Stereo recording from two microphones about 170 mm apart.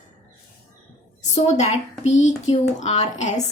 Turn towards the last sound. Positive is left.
turn(degrees=40)  # may be behind; listen again after turning